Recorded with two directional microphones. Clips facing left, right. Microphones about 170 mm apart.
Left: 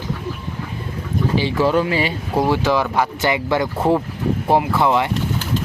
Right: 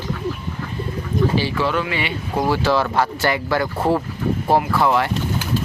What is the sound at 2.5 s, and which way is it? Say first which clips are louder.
Speech: even; 15° left (ahead or behind).